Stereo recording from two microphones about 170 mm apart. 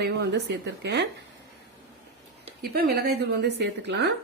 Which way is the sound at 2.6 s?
70° right (ahead or behind).